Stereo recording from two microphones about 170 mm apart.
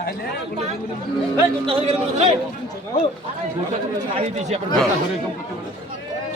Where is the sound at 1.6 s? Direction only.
35° right (ahead or behind).